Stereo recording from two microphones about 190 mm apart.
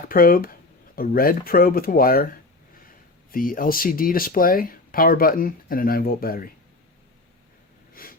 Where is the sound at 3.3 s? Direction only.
50° left (ahead or behind).